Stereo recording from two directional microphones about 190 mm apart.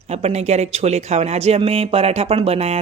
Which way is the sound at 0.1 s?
35° right (ahead or behind).